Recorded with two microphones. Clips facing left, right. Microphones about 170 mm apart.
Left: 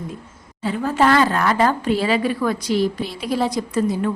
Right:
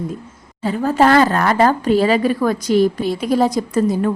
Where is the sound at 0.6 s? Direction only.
40° right (ahead or behind).